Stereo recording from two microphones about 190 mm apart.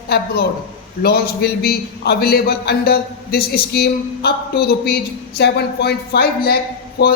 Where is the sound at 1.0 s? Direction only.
55° left (ahead or behind).